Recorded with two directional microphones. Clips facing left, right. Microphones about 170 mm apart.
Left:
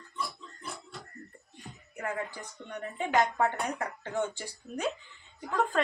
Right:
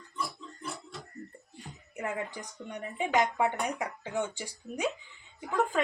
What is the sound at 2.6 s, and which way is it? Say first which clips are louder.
Speech: right 1 dB; 15° right (ahead or behind).